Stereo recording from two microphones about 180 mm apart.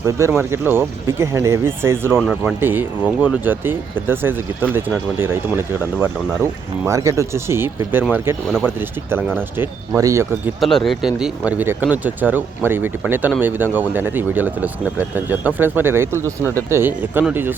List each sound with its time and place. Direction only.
0.0 s speech: 15° right (ahead or behind)
2.1 s speech: 5° right (ahead or behind)
6.0 s speech: 15° right (ahead or behind)
10.6 s speech: centre (ahead or behind)